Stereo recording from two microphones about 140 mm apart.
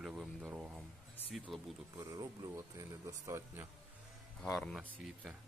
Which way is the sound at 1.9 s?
25° right (ahead or behind).